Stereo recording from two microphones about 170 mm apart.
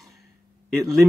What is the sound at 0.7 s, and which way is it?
Speech, centre (ahead or behind).